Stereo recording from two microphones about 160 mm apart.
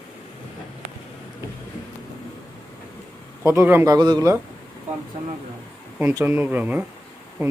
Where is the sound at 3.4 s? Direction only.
15° right (ahead or behind).